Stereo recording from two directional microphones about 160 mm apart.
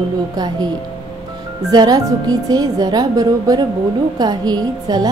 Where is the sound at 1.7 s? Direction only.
25° right (ahead or behind).